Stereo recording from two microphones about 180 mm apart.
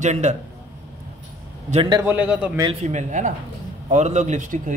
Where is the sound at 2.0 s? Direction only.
10° right (ahead or behind).